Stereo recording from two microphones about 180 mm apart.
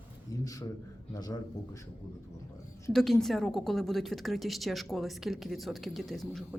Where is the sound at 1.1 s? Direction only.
20° left (ahead or behind).